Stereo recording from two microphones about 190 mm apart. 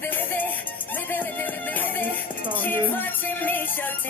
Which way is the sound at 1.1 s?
10° left (ahead or behind).